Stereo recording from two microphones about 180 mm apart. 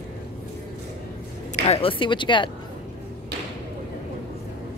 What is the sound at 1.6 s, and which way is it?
Speech, 30° left (ahead or behind).